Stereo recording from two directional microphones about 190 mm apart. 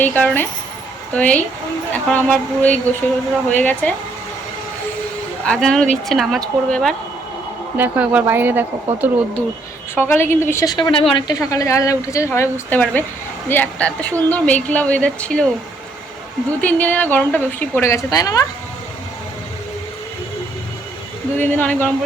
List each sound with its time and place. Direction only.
0.0 s a woman's voice: 10° left (ahead or behind)
5.5 s a woman's voice: 5° left (ahead or behind)
7.8 s a woman's voice: 10° right (ahead or behind)
9.9 s a woman's voice: 10° left (ahead or behind)
16.6 s a woman's voice: 5° left (ahead or behind)
21.3 s a woman's voice: 10° left (ahead or behind)